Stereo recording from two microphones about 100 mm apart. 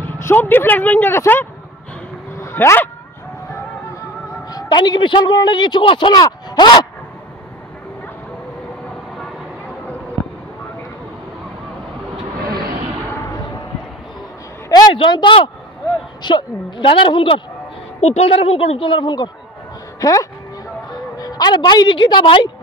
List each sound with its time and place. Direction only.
0.2 s speech: 20° left (ahead or behind)
2.4 s dog: 25° left (ahead or behind)
4.5 s a man's voice: 45° left (ahead or behind)
13.1 s basketball bounce: 30° left (ahead or behind)
14.7 s a sound: 45° left (ahead or behind)
15.0 s a man's voice: 55° left (ahead or behind)
18.0 s a woman's voice: 85° left; by 19.3 s 50° left (ahead or behind)
20.0 s a man's voice: 35° left (ahead or behind); by 22.5 s 55° left (ahead or behind)